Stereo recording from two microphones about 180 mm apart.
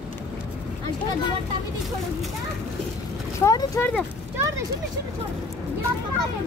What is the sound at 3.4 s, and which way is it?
Speech, 15° left (ahead or behind).